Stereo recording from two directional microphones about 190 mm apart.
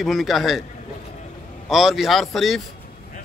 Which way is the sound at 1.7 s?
Centre (ahead or behind).